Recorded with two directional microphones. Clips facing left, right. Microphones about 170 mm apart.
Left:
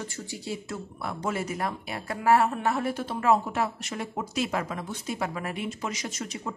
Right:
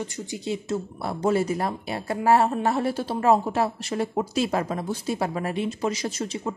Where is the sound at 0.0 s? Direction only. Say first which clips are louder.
Right 5 dB; 20° right (ahead or behind).